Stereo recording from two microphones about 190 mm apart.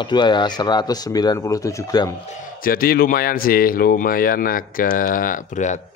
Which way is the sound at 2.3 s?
45° left (ahead or behind).